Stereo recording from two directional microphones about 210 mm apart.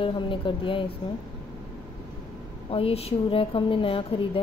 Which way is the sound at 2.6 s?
25° left (ahead or behind).